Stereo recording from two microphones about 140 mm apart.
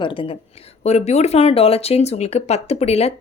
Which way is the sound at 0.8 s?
50° left (ahead or behind).